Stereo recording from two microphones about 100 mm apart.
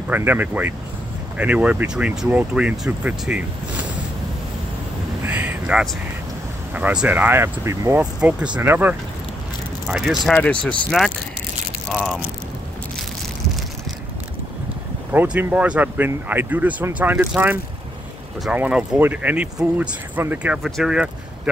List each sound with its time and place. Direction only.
0.1 s speech: 20° right (ahead or behind)
5.2 s a sound: 15° right (ahead or behind)
6.7 s speech: 15° right (ahead or behind)
8.0 s speech: 10° right (ahead or behind)
9.8 s speech: 5° right (ahead or behind)
10.3 s speech: 10° left (ahead or behind)
15.1 s speech: 15° right (ahead or behind)
20.5 s speech: centre (ahead or behind)